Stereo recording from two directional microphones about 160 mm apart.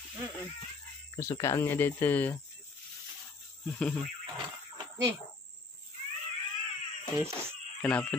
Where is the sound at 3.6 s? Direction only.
5° left (ahead or behind).